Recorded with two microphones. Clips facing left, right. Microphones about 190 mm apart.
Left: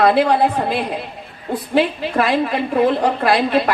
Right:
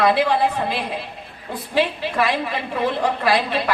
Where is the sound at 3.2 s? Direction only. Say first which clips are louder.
Left 5 dB; 50° left (ahead or behind).